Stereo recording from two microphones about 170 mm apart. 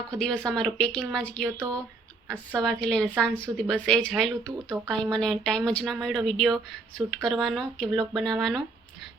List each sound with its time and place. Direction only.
0.1 s a woman's voice: 5° left (ahead or behind)
1.5 s speech: 15° right (ahead or behind)
2.6 s a woman's voice: 5° left (ahead or behind)